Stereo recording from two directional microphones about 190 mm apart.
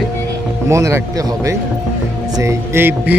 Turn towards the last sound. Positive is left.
turn(degrees=-10)  # may be behind; listen again after turning